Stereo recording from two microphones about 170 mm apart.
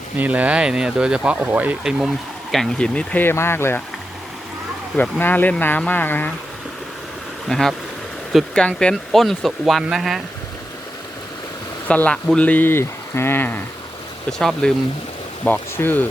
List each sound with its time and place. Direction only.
0.2 s speech: 10° right (ahead or behind); by 3.8 s 15° left (ahead or behind)
4.9 s speech: 10° left (ahead or behind)
7.4 s speech: centre (ahead or behind)
11.9 s speech: 10° left (ahead or behind)